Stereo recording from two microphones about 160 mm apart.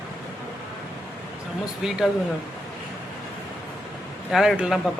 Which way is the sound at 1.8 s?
5° right (ahead or behind).